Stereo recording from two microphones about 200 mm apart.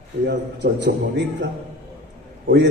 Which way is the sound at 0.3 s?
60° right (ahead or behind).